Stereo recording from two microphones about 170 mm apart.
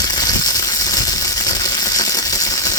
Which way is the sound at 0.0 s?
20° left (ahead or behind).